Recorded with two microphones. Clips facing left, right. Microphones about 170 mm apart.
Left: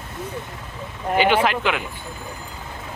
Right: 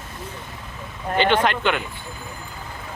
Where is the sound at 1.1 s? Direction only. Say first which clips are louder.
Left 1 dB; 10° left (ahead or behind).